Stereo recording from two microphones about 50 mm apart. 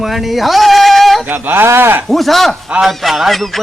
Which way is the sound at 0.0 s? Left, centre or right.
Centre.